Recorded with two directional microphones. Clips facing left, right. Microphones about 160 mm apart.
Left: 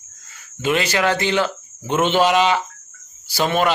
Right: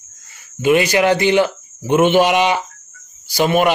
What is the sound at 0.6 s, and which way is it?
A man's voice, 10° right (ahead or behind).